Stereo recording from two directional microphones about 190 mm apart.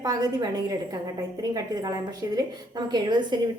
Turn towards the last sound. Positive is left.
turn(degrees=-20)  # may be behind; listen again after turning